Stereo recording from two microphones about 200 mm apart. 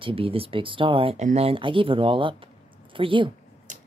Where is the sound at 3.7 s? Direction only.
40° right (ahead or behind).